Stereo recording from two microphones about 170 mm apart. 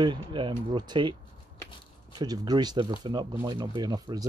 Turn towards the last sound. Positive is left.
turn(degrees=-25)  # may be behind; listen again after turning